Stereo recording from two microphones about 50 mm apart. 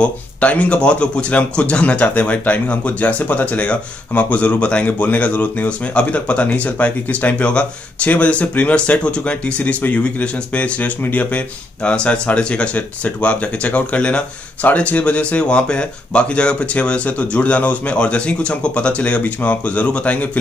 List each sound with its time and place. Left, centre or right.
0.0 s speech: left
11.9 s speech: centre